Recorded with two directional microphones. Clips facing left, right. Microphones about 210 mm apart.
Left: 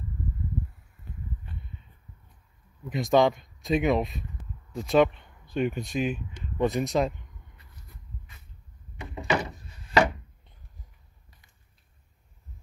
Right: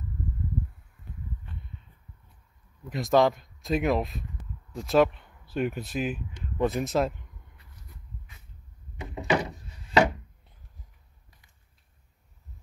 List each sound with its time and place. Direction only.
2.9 s speech: centre (ahead or behind)
9.0 s door: 10° right (ahead or behind)